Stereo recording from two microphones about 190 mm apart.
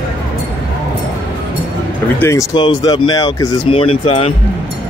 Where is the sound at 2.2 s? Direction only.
15° left (ahead or behind).